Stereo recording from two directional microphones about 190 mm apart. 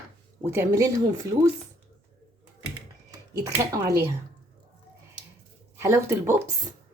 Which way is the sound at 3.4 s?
20° right (ahead or behind).